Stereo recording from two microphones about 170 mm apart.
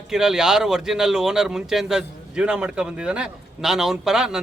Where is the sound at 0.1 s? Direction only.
5° right (ahead or behind).